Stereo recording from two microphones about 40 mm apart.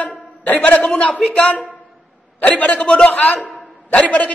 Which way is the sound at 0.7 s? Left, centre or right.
Left.